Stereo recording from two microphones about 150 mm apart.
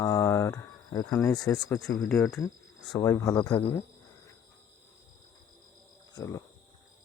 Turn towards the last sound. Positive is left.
turn(degrees=20)  # may be behind; listen again after turning